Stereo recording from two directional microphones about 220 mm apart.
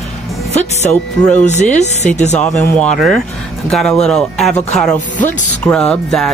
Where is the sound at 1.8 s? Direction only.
30° left (ahead or behind).